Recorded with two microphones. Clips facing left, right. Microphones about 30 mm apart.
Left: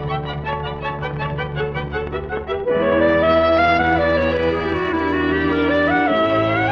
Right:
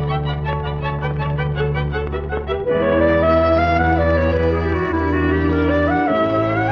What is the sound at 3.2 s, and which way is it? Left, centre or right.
Music, left.